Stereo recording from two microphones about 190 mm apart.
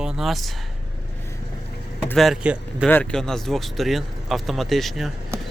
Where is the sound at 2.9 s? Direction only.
5° left (ahead or behind).